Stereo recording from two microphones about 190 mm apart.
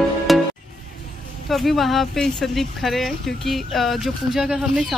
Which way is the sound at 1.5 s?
Centre (ahead or behind).